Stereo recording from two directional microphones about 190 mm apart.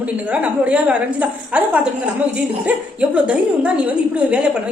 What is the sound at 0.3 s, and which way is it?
A woman's voice, 5° right (ahead or behind).